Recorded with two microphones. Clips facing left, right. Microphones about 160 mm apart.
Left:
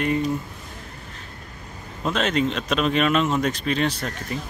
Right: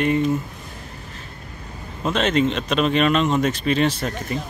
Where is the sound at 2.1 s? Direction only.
Centre (ahead or behind).